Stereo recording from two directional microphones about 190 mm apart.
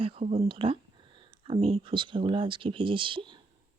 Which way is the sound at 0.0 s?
30° right (ahead or behind).